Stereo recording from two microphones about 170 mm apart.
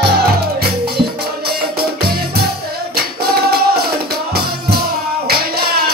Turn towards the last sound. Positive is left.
turn(degrees=-65)  # may be behind; listen again after turning